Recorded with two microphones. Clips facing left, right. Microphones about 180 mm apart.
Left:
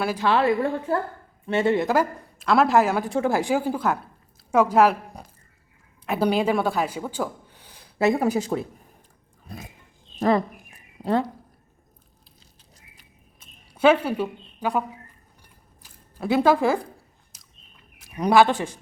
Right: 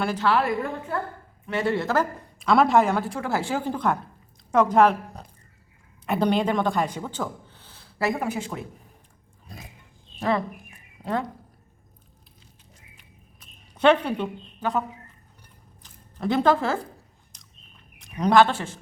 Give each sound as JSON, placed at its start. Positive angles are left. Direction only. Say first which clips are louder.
{"t": 0.0, "sound": "a woman's voice", "louder": "left 1 dB", "side_deg": 10}
{"t": 0.3, "sound": "speech", "louder": "left 4 dB", "side_deg": 30}
{"t": 2.4, "sound": "speech", "louder": "even", "side_deg": 0}
{"t": 3.0, "sound": "a woman's voice", "louder": "left 5 dB", "side_deg": 20}
{"t": 8.2, "sound": "speech", "louder": "left 6 dB", "side_deg": 40}
{"t": 10.2, "sound": "speech", "louder": "left 4 dB", "side_deg": 40}
{"t": 13.7, "sound": "a woman's voice", "louder": "left 1 dB", "side_deg": 5}
{"t": 17.3, "sound": "bird", "louder": "right 2 dB", "side_deg": 5}
{"t": 17.9, "sound": "speech", "louder": "left 1 dB", "side_deg": 5}